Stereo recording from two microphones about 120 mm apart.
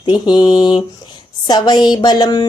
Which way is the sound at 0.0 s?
40° left (ahead or behind).